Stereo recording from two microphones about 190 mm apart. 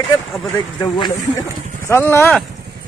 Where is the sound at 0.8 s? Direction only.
25° left (ahead or behind).